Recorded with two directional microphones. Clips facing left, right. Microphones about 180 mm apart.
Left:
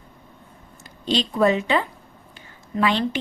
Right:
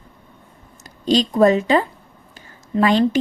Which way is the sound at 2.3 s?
40° right (ahead or behind).